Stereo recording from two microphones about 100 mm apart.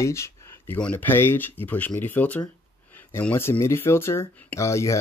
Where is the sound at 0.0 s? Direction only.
30° left (ahead or behind).